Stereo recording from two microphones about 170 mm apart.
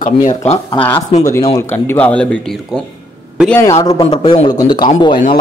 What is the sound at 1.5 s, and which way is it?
Speech, 15° left (ahead or behind).